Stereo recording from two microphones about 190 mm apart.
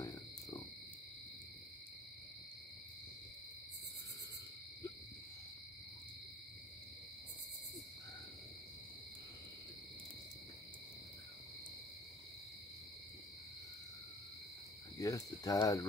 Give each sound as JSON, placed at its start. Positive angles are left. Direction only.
{"t": 15.0, "sound": "speech", "side_deg": 20}